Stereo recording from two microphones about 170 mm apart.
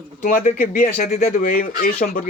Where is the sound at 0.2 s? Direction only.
55° left (ahead or behind).